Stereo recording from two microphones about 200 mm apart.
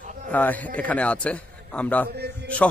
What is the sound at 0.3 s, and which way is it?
A man's voice, 10° left (ahead or behind).